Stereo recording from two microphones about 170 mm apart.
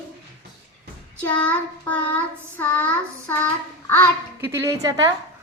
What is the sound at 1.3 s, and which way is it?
Child singing, 10° left (ahead or behind).